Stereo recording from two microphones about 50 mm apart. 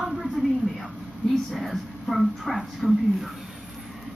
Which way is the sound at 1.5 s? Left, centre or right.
Centre.